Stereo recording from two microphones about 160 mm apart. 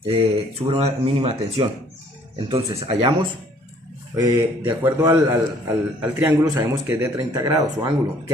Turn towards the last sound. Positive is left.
turn(degrees=-20)  # may be behind; listen again after turning